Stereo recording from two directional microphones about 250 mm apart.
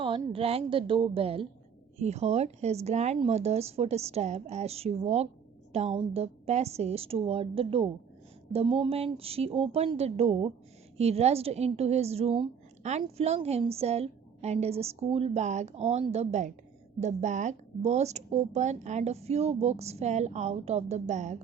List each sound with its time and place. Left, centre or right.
0.0 s a woman's voice: right